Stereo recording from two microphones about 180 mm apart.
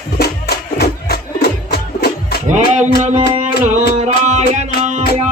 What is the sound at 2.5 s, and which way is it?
Music, 40° right (ahead or behind).